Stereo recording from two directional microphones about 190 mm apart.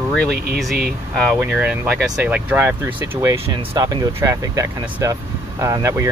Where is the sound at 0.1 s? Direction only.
Centre (ahead or behind).